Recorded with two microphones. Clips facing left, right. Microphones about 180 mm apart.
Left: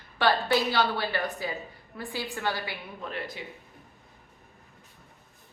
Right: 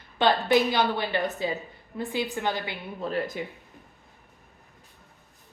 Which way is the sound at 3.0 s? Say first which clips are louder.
Right 9 dB; 40° right (ahead or behind).